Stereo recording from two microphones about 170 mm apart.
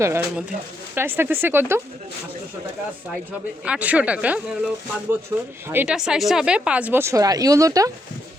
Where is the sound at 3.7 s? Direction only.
5° right (ahead or behind).